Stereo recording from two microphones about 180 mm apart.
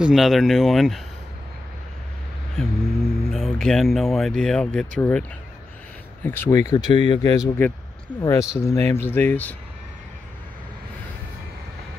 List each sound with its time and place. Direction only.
0.0 s speech: centre (ahead or behind)
2.5 s speech: centre (ahead or behind)
6.2 s speech: 10° left (ahead or behind)